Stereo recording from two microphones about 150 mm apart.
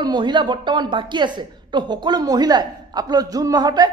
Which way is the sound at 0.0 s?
30° right (ahead or behind).